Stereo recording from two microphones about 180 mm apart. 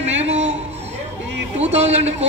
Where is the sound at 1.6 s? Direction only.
35° right (ahead or behind).